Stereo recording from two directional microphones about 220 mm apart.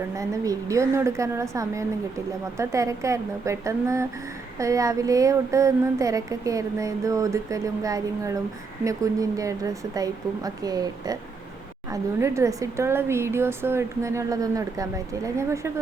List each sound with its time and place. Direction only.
0.2 s speech: 15° right (ahead or behind)